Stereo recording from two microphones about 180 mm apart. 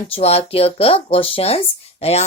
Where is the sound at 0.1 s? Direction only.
35° left (ahead or behind).